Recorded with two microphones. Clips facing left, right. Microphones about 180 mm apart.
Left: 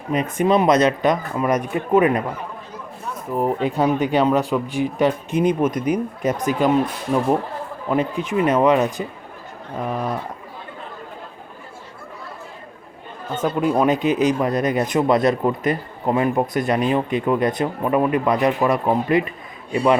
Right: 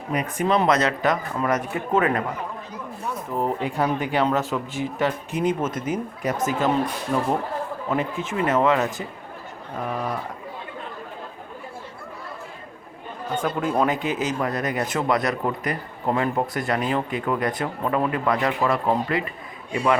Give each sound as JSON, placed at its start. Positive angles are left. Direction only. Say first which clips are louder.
{"t": 0.1, "sound": "speech", "louder": "left 4 dB", "side_deg": 20}
{"t": 3.3, "sound": "speech", "louder": "left 5 dB", "side_deg": 15}
{"t": 7.9, "sound": "speech", "louder": "left 6 dB", "side_deg": 15}
{"t": 13.3, "sound": "speech", "louder": "left 4 dB", "side_deg": 20}